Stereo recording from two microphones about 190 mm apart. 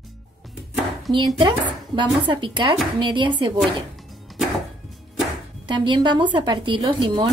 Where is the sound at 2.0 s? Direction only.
25° right (ahead or behind).